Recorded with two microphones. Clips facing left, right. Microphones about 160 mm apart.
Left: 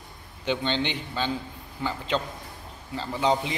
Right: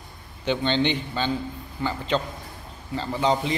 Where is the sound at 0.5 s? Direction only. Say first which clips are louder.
Right 4 dB; 5° left (ahead or behind).